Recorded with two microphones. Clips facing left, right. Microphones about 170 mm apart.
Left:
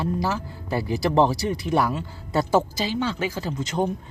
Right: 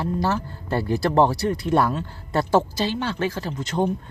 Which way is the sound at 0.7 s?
10° left (ahead or behind).